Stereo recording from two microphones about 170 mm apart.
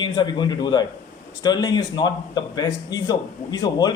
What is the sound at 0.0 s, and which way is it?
Speech, 25° left (ahead or behind).